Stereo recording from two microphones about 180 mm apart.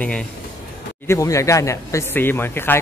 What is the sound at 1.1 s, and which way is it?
Speech, 15° left (ahead or behind).